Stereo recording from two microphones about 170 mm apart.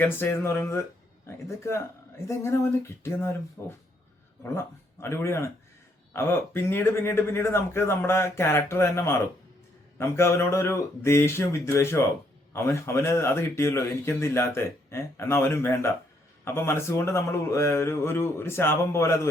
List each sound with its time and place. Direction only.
0.0 s speech: 15° left (ahead or behind)